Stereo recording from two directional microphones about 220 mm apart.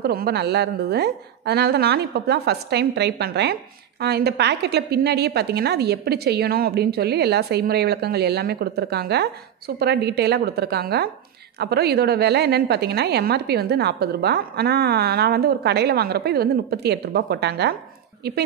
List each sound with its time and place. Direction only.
0.0 s a woman's voice: 45° right (ahead or behind)